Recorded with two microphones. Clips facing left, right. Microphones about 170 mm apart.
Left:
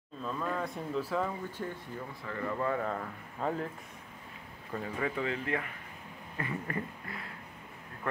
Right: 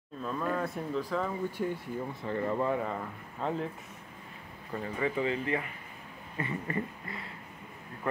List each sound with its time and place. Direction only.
0.2 s speech: 5° right (ahead or behind)
1.6 s speech: 15° right (ahead or behind)
2.2 s speech: 30° right (ahead or behind)
2.7 s speech: 5° right (ahead or behind)
4.7 s speech: centre (ahead or behind)